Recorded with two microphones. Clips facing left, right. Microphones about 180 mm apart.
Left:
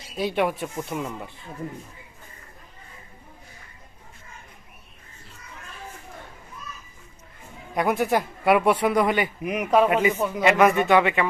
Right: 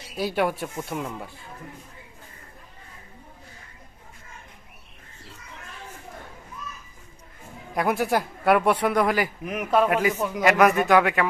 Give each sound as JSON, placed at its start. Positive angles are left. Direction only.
{"t": 0.2, "sound": "speech", "side_deg": -5}
{"t": 7.8, "sound": "speech", "side_deg": 0}